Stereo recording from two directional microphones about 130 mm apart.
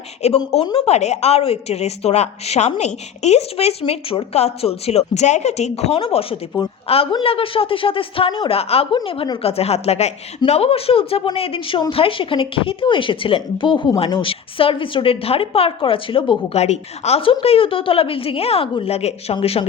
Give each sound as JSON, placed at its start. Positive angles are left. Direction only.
{"t": 0.2, "sound": "a woman's voice", "side_deg": 55}
{"t": 9.4, "sound": "a woman's voice", "side_deg": 50}
{"t": 16.5, "sound": "a woman's voice", "side_deg": 55}